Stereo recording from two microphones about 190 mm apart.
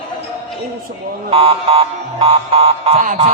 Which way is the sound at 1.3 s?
30° right (ahead or behind).